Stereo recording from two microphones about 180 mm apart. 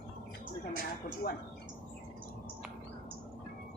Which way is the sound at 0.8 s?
55° left (ahead or behind).